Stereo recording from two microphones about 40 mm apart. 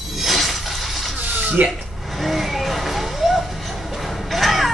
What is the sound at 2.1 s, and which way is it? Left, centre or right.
Vehicle, centre.